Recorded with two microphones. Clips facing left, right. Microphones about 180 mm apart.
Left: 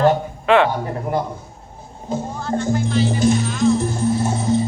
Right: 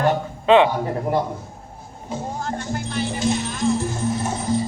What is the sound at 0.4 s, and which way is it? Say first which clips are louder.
Speech: right 1 dB; 20° right (ahead or behind).